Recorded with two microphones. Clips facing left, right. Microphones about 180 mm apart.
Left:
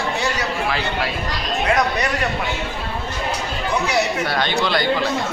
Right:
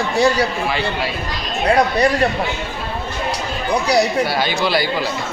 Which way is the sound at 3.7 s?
35° right (ahead or behind).